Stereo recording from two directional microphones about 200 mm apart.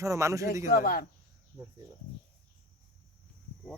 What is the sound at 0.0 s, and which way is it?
Speech, 15° right (ahead or behind).